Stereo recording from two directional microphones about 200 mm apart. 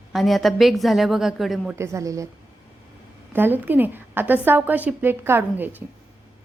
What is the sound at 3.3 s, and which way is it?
A woman's voice, 10° right (ahead or behind).